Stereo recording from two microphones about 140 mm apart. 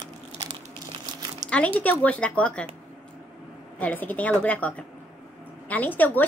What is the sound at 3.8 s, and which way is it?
A child's voice, 10° left (ahead or behind).